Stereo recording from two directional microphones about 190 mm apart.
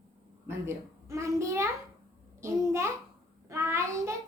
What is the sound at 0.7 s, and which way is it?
A child's voice, 15° right (ahead or behind).